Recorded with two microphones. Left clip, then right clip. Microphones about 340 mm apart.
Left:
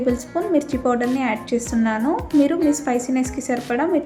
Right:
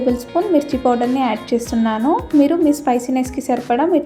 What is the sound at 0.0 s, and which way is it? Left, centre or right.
A woman's voice, centre.